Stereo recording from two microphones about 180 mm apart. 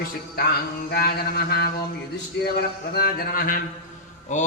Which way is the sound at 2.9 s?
55° left (ahead or behind).